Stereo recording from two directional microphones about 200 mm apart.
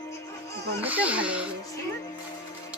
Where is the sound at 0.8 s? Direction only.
5° right (ahead or behind).